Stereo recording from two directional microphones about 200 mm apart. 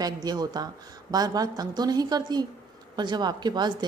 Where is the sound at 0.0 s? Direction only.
20° right (ahead or behind).